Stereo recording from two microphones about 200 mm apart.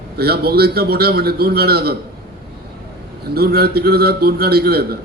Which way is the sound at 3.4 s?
50° right (ahead or behind).